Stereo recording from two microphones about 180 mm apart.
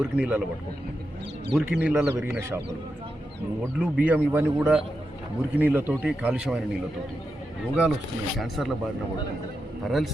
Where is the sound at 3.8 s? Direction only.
5° right (ahead or behind).